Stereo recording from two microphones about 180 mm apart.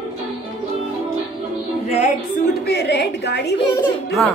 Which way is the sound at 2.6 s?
65° left (ahead or behind).